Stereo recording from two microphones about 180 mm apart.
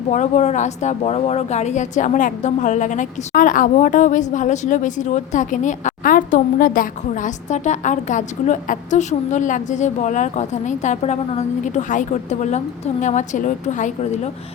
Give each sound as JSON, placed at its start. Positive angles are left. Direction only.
{"t": 0.1, "sound": "a woman's voice", "side_deg": 40}